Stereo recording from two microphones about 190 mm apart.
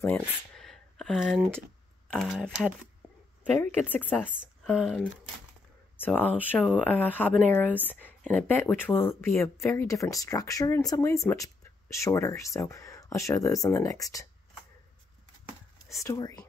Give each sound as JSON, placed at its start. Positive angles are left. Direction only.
{"t": 0.0, "sound": "speech", "side_deg": 5}
{"t": 3.6, "sound": "speech", "side_deg": 10}
{"t": 4.2, "sound": "speech", "side_deg": -5}
{"t": 5.9, "sound": "speech", "side_deg": 10}
{"t": 16.0, "sound": "speech", "side_deg": 15}